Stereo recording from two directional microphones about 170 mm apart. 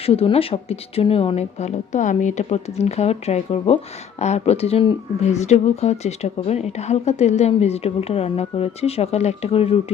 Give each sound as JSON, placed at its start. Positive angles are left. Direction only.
{"t": 0.0, "sound": "speech", "side_deg": 35}